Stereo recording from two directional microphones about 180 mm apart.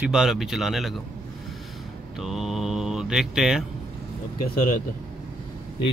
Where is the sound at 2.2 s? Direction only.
Centre (ahead or behind).